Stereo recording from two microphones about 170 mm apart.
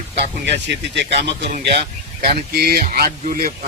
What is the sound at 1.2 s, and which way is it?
Speech, 35° right (ahead or behind).